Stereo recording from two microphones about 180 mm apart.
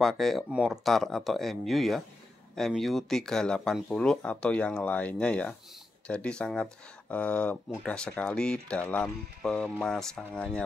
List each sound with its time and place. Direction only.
0.0 s speech: centre (ahead or behind)